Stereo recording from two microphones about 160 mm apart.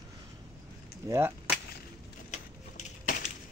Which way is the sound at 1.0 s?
20° right (ahead or behind).